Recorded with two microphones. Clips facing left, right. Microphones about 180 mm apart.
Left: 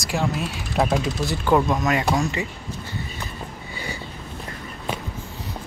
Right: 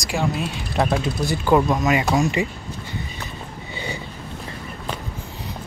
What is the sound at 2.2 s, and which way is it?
Speech, 15° right (ahead or behind).